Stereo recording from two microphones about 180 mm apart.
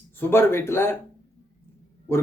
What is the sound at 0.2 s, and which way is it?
Speech, 15° left (ahead or behind).